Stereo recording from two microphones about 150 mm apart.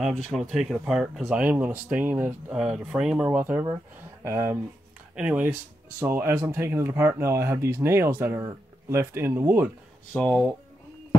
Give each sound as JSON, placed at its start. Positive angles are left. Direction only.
{"t": 0.0, "sound": "speech", "side_deg": 0}
{"t": 10.1, "sound": "speech", "side_deg": 10}